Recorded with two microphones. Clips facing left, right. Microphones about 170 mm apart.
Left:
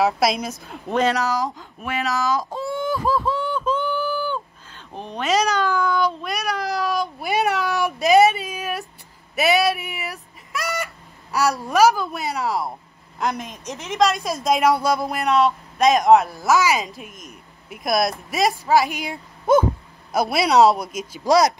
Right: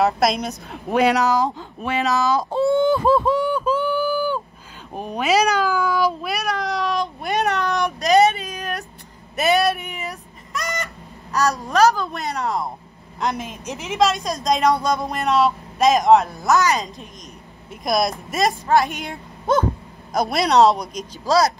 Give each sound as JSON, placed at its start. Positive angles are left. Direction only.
{"t": 0.0, "sound": "a woman's voice", "side_deg": 0}
{"t": 0.8, "sound": "a woman's voice", "side_deg": -10}
{"t": 9.3, "sound": "a sound", "side_deg": 5}
{"t": 11.3, "sound": "a woman's voice", "side_deg": 10}
{"t": 21.3, "sound": "speech", "side_deg": 15}